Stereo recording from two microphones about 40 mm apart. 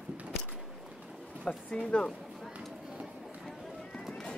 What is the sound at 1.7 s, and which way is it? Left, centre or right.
Speech, left.